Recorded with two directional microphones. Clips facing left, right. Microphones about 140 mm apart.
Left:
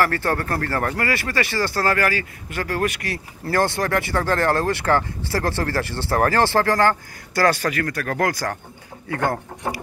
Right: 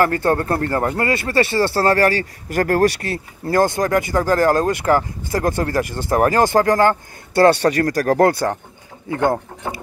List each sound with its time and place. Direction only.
0.0 s speech: 20° right (ahead or behind)
2.6 s speech: 45° right (ahead or behind)
2.9 s speech: 25° right (ahead or behind)
9.1 s speech: 20° right (ahead or behind)